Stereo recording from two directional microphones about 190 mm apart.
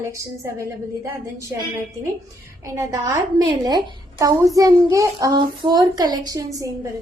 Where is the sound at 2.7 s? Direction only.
15° right (ahead or behind).